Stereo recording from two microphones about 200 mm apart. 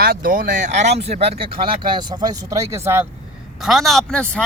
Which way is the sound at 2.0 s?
20° right (ahead or behind).